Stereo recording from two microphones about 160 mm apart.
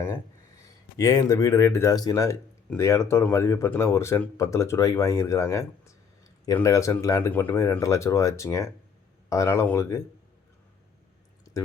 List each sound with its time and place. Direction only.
0.1 s speech: 20° left (ahead or behind)